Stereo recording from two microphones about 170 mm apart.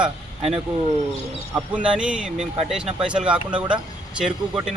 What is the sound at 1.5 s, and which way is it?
Speech, 5° right (ahead or behind).